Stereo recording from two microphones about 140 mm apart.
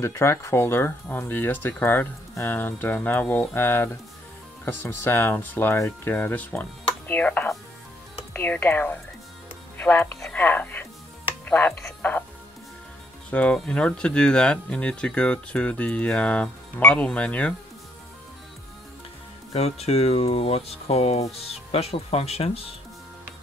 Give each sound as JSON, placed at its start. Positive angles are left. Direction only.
{"t": 0.0, "sound": "speech", "side_deg": 20}
{"t": 13.3, "sound": "speech", "side_deg": 10}
{"t": 19.5, "sound": "speech", "side_deg": 45}